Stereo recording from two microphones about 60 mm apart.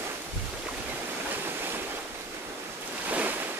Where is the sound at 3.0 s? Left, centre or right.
Right.